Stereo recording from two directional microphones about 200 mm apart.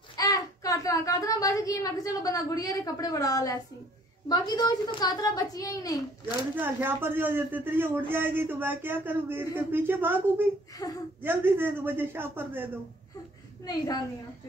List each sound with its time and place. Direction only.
0.2 s a child's voice: 15° left (ahead or behind)
6.5 s a man's voice: 10° right (ahead or behind)
13.7 s a woman's voice: 20° left (ahead or behind)